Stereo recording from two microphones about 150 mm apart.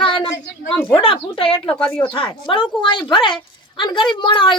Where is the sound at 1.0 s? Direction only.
35° left (ahead or behind).